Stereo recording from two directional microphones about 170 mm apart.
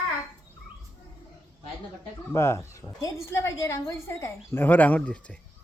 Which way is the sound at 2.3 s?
15° left (ahead or behind).